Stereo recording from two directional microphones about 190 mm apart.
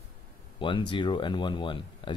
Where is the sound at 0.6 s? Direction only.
25° left (ahead or behind).